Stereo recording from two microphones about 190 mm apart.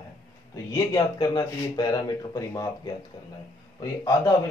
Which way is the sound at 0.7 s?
20° left (ahead or behind).